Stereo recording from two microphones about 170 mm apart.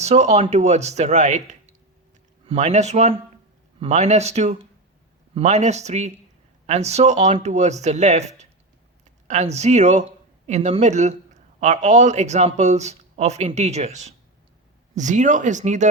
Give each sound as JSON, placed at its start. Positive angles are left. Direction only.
{"t": 0.0, "sound": "speech", "side_deg": -40}
{"t": 2.5, "sound": "speech", "side_deg": -40}
{"t": 9.2, "sound": "speech", "side_deg": -45}